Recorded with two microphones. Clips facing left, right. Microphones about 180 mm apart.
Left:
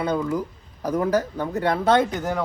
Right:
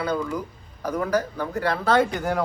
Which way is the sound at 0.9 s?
20° left (ahead or behind).